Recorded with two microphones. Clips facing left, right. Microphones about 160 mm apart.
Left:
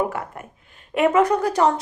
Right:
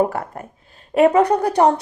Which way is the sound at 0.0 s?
40° right (ahead or behind).